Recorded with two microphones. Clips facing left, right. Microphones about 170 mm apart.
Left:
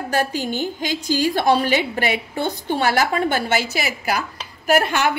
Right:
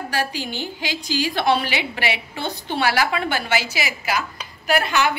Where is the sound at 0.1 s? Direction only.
50° left (ahead or behind).